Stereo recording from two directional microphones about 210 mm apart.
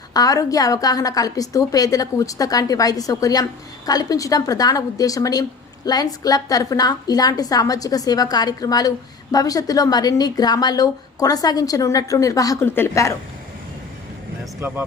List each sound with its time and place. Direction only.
0.1 s a woman's voice: 15° left (ahead or behind)
14.6 s speech: 10° right (ahead or behind)